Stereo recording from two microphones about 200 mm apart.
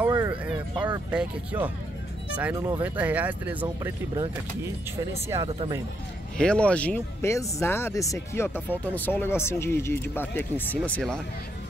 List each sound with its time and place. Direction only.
0.0 s a sound: 10° right (ahead or behind)
1.1 s speech: 10° right (ahead or behind)
6.3 s speech: 5° left (ahead or behind)